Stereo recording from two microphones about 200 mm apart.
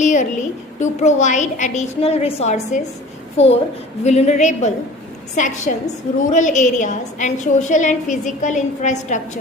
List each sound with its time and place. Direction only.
0.0 s a woman's voice: 40° left (ahead or behind)